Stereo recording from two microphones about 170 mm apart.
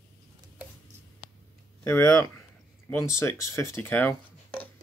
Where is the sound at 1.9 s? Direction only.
15° left (ahead or behind).